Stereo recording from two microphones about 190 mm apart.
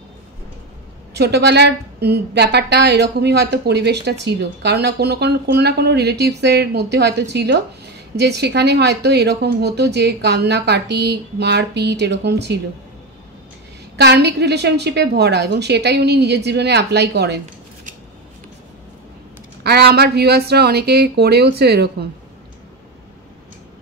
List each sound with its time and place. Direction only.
1.1 s a woman's voice: 60° right (ahead or behind)
13.9 s a woman's voice: 60° right (ahead or behind)
19.6 s a woman's voice: 60° right (ahead or behind)